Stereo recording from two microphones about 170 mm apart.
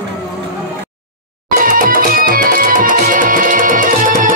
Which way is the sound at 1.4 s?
55° right (ahead or behind).